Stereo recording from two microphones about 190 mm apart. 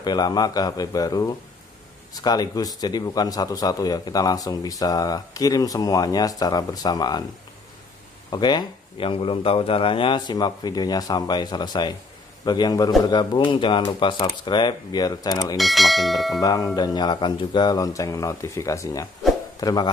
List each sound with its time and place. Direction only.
0.0 s a man's voice: 20° left (ahead or behind)
8.3 s a man's voice: 20° left (ahead or behind)
15.5 s speech: centre (ahead or behind)
16.3 s a man's voice: 20° left (ahead or behind)